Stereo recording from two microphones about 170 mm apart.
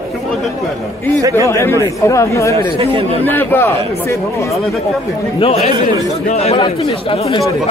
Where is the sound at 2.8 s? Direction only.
35° right (ahead or behind).